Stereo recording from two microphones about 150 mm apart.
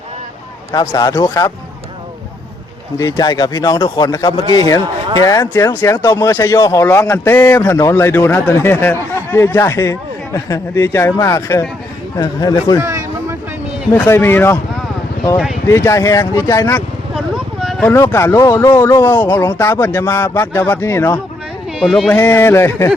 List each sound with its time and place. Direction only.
0.7 s speech: 25° left (ahead or behind)
3.0 s a man's voice: 25° left (ahead or behind)
12.8 s a sound: 20° right (ahead or behind)
13.9 s a man's voice: 15° left (ahead or behind)
15.6 s speech: 20° left (ahead or behind)
17.2 s a sound: centre (ahead or behind)
17.8 s a man's voice: 15° left (ahead or behind)
21.8 s speech: centre (ahead or behind)
22.1 s a man's voice: 15° left (ahead or behind)